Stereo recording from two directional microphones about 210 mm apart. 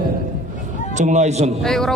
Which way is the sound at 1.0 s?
35° right (ahead or behind).